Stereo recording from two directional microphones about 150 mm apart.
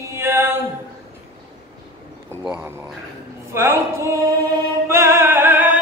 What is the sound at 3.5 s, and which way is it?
Music, 15° right (ahead or behind).